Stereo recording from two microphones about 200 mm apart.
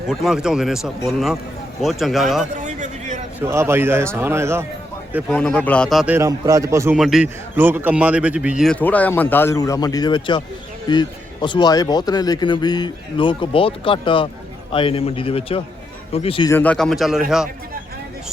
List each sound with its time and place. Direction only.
0.1 s a man's voice: centre (ahead or behind)
2.6 s a sound: 40° right (ahead or behind)
3.4 s a man's voice: 15° right (ahead or behind)
5.3 s a man's voice: 5° left (ahead or behind)
6.1 s a man's voice: 15° right (ahead or behind); by 16.5 s 30° left (ahead or behind)
16.5 s a man's voice: 10° left (ahead or behind)